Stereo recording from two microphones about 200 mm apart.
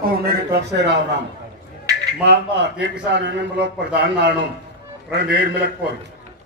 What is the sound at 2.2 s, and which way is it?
A man's voice, 55° right (ahead or behind).